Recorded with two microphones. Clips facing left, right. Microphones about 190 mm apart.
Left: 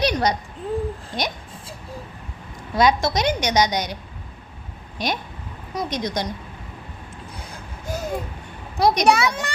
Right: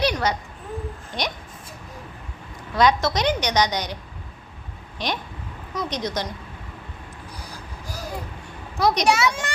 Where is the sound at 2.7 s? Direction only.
10° left (ahead or behind).